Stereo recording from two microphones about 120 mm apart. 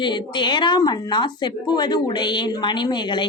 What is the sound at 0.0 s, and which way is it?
Speech, 40° left (ahead or behind).